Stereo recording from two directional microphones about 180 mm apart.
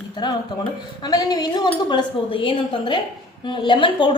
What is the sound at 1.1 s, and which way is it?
A woman's voice, 20° left (ahead or behind).